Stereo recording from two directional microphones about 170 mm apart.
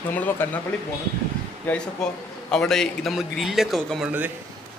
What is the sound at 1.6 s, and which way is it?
A man's voice, 5° left (ahead or behind).